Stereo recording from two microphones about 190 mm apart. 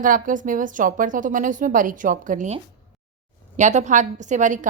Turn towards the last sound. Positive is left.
turn(degrees=-40)  # may be behind; listen again after turning